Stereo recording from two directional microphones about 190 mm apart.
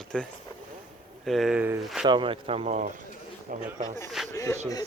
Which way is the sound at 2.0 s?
25° right (ahead or behind).